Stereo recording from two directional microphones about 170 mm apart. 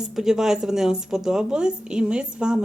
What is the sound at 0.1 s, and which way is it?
Speech, 5° right (ahead or behind).